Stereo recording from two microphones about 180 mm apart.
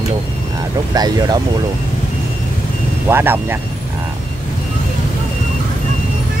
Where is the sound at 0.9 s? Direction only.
20° right (ahead or behind).